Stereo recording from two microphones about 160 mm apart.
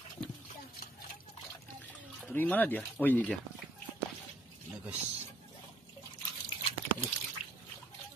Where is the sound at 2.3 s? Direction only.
10° left (ahead or behind).